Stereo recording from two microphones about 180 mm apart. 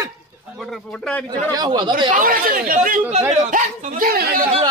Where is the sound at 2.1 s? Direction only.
50° right (ahead or behind).